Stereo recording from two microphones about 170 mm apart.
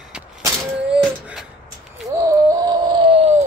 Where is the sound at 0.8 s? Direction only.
5° right (ahead or behind).